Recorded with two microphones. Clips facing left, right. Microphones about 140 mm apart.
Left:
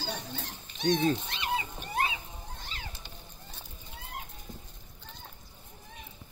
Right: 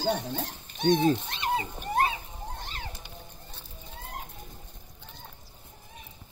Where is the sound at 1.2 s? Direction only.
40° right (ahead or behind).